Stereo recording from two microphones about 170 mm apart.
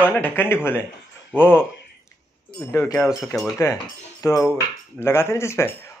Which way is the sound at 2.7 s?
15° left (ahead or behind).